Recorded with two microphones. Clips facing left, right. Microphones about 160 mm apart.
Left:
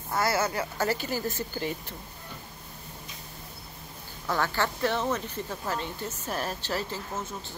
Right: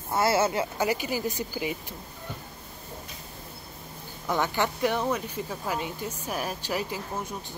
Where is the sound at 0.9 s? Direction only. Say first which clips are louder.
Right 1 dB; 15° right (ahead or behind).